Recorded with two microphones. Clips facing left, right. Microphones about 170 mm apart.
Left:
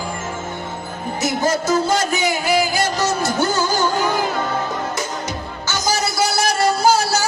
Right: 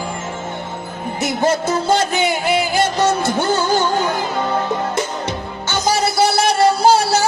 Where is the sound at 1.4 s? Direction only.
30° right (ahead or behind).